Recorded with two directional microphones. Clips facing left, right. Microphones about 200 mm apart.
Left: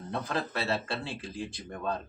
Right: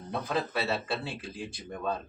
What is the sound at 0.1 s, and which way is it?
Speech, 5° right (ahead or behind).